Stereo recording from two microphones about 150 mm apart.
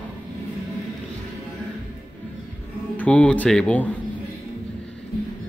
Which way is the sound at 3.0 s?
10° left (ahead or behind).